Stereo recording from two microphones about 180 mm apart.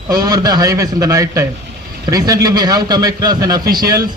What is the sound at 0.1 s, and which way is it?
A man's voice, 20° right (ahead or behind).